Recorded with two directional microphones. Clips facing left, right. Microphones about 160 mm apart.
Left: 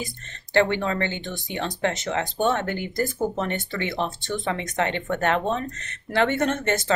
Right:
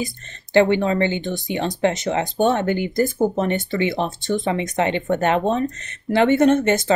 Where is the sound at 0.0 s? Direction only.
15° right (ahead or behind).